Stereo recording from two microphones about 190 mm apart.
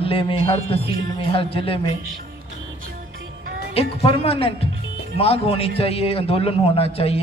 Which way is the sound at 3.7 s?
30° left (ahead or behind).